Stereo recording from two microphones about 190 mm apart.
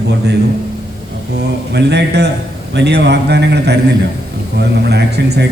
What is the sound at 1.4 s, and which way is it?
A man's voice, 65° right (ahead or behind).